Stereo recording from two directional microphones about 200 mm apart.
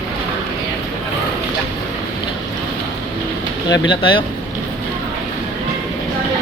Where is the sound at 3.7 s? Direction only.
25° left (ahead or behind).